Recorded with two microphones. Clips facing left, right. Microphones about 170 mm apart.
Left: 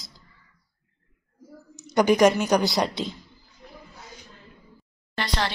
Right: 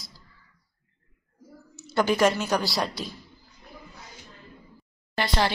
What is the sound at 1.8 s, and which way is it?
A woman's voice, 15° left (ahead or behind).